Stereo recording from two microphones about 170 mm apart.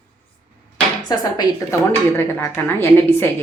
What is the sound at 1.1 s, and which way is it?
Speech, 25° left (ahead or behind).